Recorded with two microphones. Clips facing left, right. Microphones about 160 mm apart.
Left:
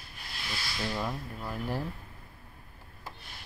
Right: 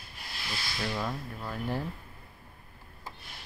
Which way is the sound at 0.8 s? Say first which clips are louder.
Even; 5° left (ahead or behind).